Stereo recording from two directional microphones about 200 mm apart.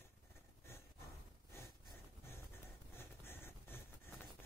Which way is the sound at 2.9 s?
10° left (ahead or behind).